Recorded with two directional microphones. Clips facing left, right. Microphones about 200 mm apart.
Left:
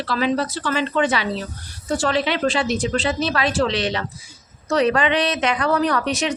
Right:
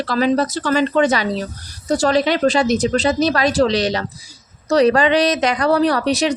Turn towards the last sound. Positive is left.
turn(degrees=-35)  # may be behind; listen again after turning